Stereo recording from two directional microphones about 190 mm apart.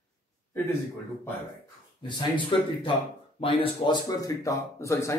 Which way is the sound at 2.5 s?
25° left (ahead or behind).